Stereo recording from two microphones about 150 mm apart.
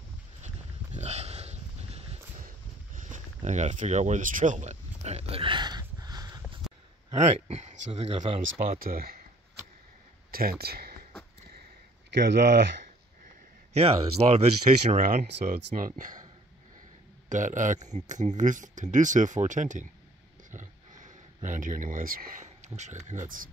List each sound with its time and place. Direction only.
0.9 s pig: 45° right (ahead or behind)
2.4 s a sound: 60° right (ahead or behind); by 6.6 s 25° right (ahead or behind)
7.4 s speech: 50° right (ahead or behind)
8.7 s speech: 80° right
10.3 s speech: 85° right
12.1 s speech: 90° right
13.7 s speech: 40° right (ahead or behind)
14.9 s speech: 55° right (ahead or behind)
17.3 s speech: 55° right (ahead or behind)
20.5 s a sound: 55° right (ahead or behind)
23.0 s speech: 60° right (ahead or behind)